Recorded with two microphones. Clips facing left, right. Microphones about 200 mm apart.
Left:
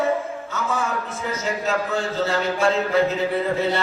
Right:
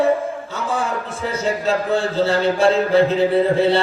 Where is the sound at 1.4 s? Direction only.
30° right (ahead or behind).